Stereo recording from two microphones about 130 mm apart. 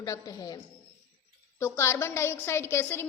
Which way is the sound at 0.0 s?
25° left (ahead or behind).